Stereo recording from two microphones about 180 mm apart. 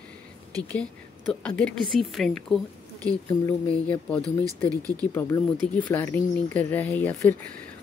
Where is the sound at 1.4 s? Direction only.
5° left (ahead or behind).